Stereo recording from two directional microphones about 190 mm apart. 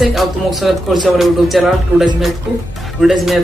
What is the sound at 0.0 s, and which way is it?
Speech, centre (ahead or behind).